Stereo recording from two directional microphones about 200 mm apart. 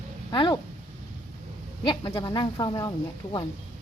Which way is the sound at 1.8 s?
25° left (ahead or behind).